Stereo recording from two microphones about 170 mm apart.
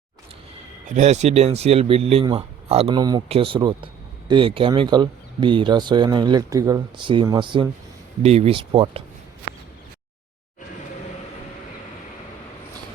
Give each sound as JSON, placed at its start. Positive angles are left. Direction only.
{"t": 0.9, "sound": "speech", "side_deg": -40}
{"t": 3.0, "sound": "speech", "side_deg": -25}